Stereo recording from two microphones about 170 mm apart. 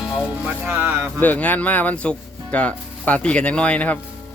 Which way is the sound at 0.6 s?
10° right (ahead or behind).